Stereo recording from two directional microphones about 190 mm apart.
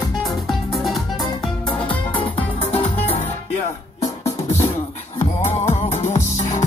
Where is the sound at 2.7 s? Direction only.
30° left (ahead or behind).